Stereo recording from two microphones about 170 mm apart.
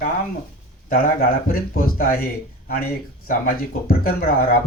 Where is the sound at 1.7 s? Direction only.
60° left (ahead or behind).